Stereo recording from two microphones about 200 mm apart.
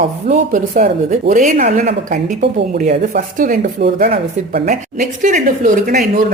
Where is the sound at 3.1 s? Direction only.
45° right (ahead or behind).